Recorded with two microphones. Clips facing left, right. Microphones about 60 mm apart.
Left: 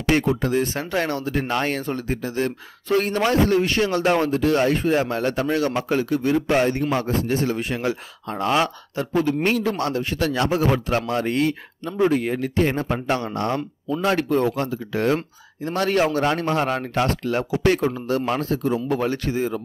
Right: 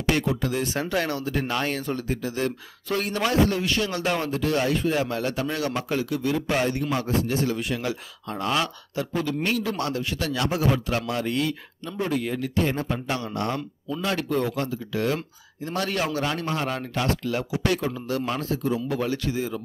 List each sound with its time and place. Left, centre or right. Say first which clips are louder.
0.1 s speech: left 5 dB; left
1.7 s speech: left 2 dB; left